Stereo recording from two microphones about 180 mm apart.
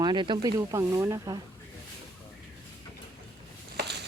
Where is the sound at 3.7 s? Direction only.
70° right (ahead or behind).